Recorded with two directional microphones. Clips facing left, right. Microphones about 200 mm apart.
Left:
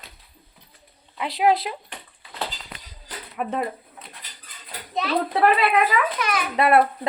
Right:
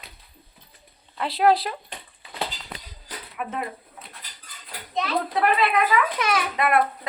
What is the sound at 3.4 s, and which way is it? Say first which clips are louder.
Speech: left 4 dB; 35° left (ahead or behind).